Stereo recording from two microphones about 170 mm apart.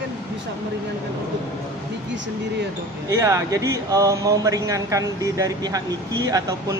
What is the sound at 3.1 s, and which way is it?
Speech, 15° right (ahead or behind).